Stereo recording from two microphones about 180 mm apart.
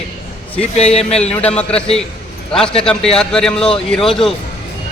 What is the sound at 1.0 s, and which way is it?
Speech, 35° left (ahead or behind).